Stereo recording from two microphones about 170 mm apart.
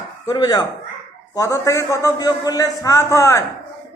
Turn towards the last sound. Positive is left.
turn(degrees=20)  # may be behind; listen again after turning